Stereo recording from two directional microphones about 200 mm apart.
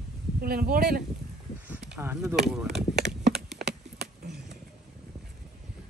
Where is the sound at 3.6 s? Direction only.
55° right (ahead or behind).